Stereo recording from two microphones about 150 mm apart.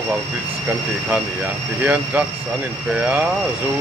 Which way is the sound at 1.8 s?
10° right (ahead or behind).